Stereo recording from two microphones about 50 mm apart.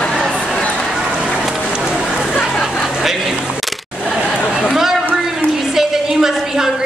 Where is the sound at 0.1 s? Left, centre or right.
Centre.